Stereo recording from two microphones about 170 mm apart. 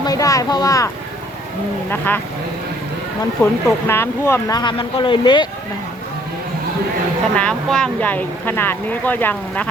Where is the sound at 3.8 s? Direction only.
15° left (ahead or behind).